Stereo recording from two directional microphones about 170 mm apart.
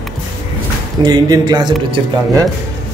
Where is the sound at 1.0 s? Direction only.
25° right (ahead or behind).